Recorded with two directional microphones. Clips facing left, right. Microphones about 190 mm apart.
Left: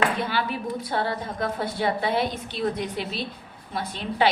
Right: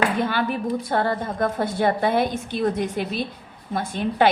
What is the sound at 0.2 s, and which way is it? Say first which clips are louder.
A woman's voice: right 4 dB; 50° right (ahead or behind).